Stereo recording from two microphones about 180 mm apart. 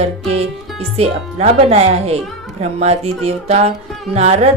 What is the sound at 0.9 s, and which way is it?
A woman's voice, 35° right (ahead or behind).